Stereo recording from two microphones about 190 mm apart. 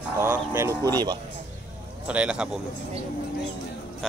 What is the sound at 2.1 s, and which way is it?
Speech, 5° right (ahead or behind).